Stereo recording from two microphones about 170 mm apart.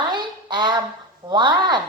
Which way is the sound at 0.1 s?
25° right (ahead or behind).